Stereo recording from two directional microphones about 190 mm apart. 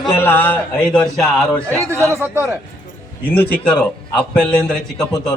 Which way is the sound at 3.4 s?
5° left (ahead or behind).